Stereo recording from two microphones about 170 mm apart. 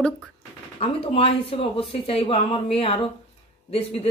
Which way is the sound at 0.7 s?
35° left (ahead or behind).